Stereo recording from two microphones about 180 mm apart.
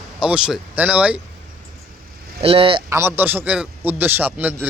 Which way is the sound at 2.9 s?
15° right (ahead or behind).